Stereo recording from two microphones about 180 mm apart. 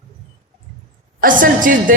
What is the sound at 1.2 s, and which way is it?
Speech, 50° right (ahead or behind).